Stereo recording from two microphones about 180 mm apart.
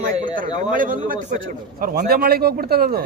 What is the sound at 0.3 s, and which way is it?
A man's voice, 50° right (ahead or behind).